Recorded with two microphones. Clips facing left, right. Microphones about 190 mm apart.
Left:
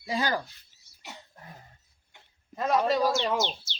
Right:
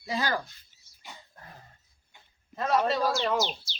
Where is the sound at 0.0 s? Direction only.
15° left (ahead or behind).